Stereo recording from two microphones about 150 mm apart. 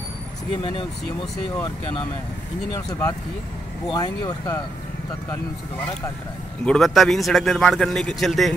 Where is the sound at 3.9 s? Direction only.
25° left (ahead or behind).